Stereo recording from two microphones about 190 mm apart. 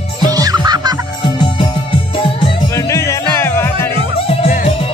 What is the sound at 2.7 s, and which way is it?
Music, 15° left (ahead or behind).